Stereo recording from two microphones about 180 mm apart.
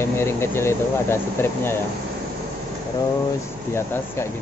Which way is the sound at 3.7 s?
15° left (ahead or behind).